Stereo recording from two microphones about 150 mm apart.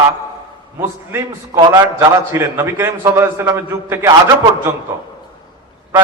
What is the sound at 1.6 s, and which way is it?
A man's voice, 25° right (ahead or behind).